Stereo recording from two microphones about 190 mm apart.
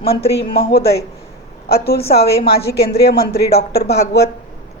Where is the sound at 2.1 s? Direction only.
55° left (ahead or behind).